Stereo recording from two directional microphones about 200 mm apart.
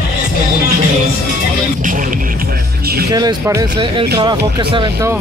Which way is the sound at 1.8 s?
40° right (ahead or behind).